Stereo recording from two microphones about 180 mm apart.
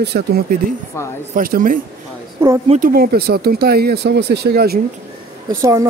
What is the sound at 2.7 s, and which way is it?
Speech, 55° right (ahead or behind).